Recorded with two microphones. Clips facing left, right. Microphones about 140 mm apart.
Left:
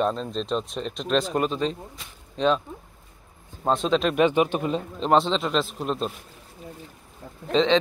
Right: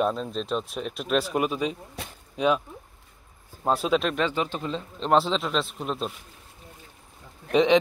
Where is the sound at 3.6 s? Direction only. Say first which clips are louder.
Left 1 dB; 5° right (ahead or behind).